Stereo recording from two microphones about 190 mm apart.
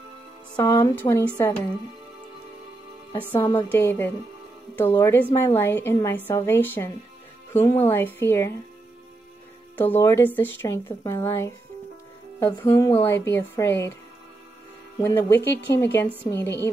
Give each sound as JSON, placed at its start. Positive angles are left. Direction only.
{"t": 0.6, "sound": "a woman's voice", "side_deg": 15}
{"t": 3.1, "sound": "a woman's voice", "side_deg": 15}
{"t": 9.8, "sound": "a woman's voice", "side_deg": 10}
{"t": 15.0, "sound": "a woman's voice", "side_deg": 15}